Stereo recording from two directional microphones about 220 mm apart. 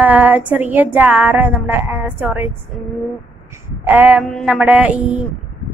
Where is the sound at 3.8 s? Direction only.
10° right (ahead or behind).